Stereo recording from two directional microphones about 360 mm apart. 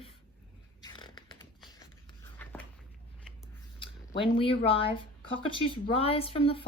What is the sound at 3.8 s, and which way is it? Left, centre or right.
Speech, centre.